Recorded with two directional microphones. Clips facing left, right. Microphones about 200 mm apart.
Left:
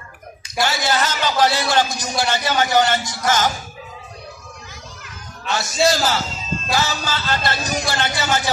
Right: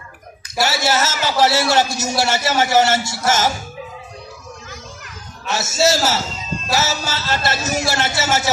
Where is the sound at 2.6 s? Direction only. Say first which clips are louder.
Right 3 dB; 25° right (ahead or behind).